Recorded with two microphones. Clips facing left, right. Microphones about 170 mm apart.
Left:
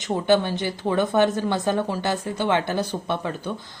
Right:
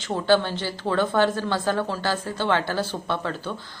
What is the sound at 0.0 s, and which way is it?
A woman's voice, 15° left (ahead or behind).